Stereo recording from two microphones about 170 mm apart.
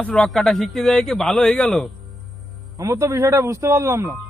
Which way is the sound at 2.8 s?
15° right (ahead or behind).